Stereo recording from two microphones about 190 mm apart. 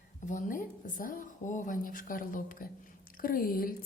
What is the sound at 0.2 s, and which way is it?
Speech, 40° left (ahead or behind).